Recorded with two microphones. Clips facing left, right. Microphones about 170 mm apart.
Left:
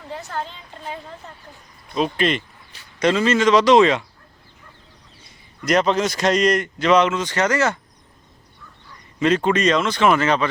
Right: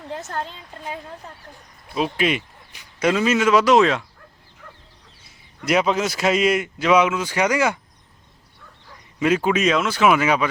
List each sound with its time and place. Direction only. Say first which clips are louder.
1.9 s a man's voice: left 1 dB; 5° right (ahead or behind)
5.2 s a man's voice: left 1 dB; 5° right (ahead or behind)
9.1 s a man's voice: left 1 dB; 10° right (ahead or behind)